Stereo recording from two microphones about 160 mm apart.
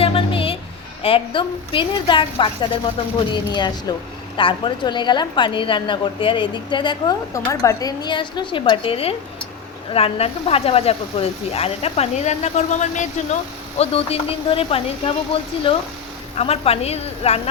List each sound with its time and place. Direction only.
0.0 s music: 35° left (ahead or behind)
1.0 s a woman's voice: 35° left (ahead or behind); by 13.1 s 50° left (ahead or behind)
13.7 s speech: 40° left (ahead or behind)